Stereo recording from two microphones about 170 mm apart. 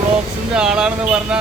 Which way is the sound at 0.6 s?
5° right (ahead or behind).